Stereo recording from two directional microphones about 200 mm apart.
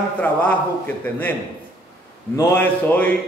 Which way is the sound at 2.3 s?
10° left (ahead or behind).